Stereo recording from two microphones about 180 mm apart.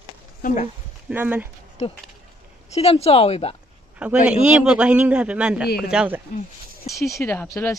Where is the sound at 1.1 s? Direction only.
10° right (ahead or behind).